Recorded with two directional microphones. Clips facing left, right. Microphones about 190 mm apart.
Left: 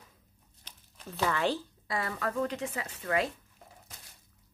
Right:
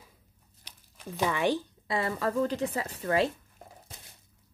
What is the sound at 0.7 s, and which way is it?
Speech, 10° right (ahead or behind).